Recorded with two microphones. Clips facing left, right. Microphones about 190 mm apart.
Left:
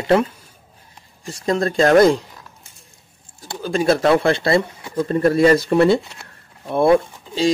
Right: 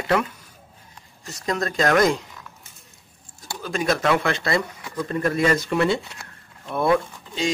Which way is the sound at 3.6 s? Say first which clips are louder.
Left 6 dB; 30° left (ahead or behind).